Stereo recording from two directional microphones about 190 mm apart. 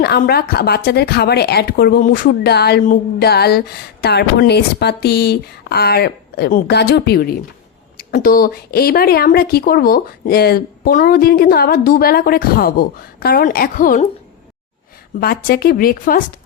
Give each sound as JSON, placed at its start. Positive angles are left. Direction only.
{"t": 0.0, "sound": "a woman's voice", "side_deg": 55}
{"t": 15.2, "sound": "a woman's voice", "side_deg": 55}